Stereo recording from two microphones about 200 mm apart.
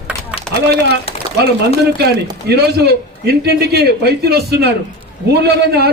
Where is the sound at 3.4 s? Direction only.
55° right (ahead or behind).